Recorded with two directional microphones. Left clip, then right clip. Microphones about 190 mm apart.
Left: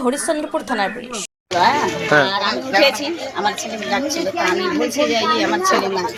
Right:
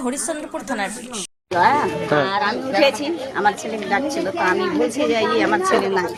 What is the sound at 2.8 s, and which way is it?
Speech, 30° right (ahead or behind).